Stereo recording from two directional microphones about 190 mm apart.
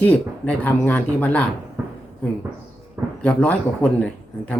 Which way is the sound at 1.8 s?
10° right (ahead or behind).